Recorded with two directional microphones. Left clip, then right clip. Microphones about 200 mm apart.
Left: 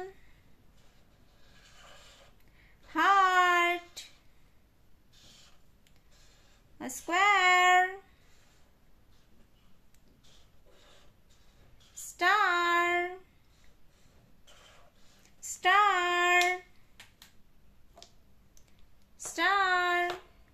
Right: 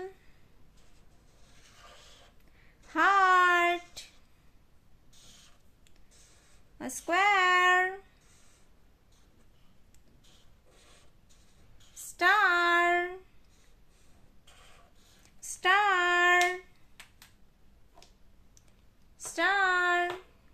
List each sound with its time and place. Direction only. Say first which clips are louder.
2.8 s child singing: even; 20° right (ahead or behind)
7.1 s child singing: even; 20° right (ahead or behind)
12.2 s child singing: right 2 dB; 20° right (ahead or behind)
15.2 s female singing: even; 20° right (ahead or behind)
19.3 s a sound: even; 15° right (ahead or behind)